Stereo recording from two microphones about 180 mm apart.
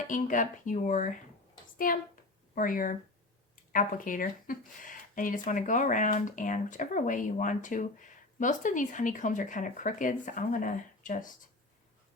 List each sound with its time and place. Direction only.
0.1 s speech: 45° left (ahead or behind)